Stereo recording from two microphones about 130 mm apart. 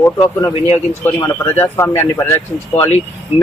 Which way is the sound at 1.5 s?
20° left (ahead or behind).